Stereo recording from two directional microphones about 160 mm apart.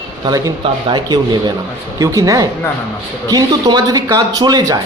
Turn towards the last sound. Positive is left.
turn(degrees=-25)  # may be behind; listen again after turning